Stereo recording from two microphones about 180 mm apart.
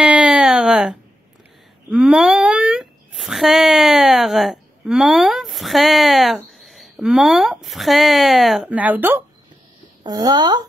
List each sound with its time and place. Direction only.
0.0 s a sound: 5° right (ahead or behind)
1.9 s speech: centre (ahead or behind)
10.0 s speech: 20° right (ahead or behind)